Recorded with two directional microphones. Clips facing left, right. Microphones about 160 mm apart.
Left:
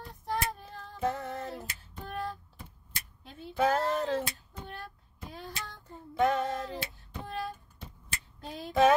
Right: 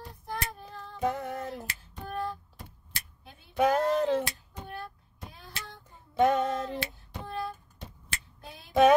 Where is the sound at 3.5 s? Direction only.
15° right (ahead or behind).